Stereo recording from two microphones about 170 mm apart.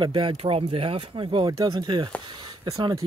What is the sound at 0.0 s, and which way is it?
Speech, 30° right (ahead or behind).